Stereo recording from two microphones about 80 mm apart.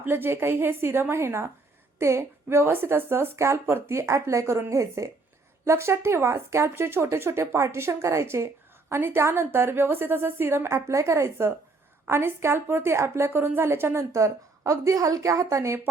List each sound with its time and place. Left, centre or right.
0.0 s a woman's voice: right